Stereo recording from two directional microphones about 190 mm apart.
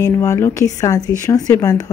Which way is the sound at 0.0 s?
15° left (ahead or behind).